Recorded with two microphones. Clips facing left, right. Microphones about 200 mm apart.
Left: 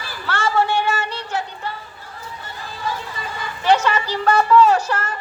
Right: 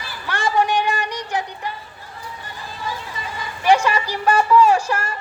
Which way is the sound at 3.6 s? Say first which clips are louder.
Right 1 dB; 10° right (ahead or behind).